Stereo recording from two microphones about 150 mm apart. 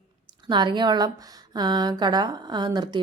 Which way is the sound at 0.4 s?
30° right (ahead or behind).